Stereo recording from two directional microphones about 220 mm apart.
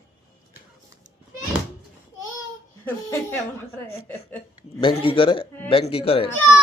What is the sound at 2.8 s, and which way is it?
Speech, 10° left (ahead or behind).